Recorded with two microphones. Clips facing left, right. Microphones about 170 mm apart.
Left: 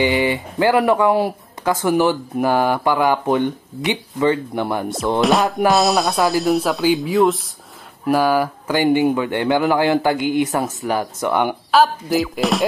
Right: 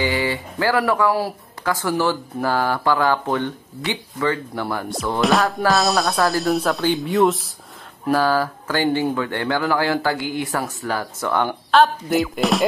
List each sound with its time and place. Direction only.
0.0 s speech: 20° left (ahead or behind)
4.8 s speech: centre (ahead or behind)
8.1 s speech: 15° left (ahead or behind)